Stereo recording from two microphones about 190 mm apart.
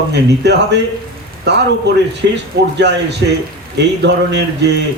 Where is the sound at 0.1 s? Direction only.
65° right (ahead or behind).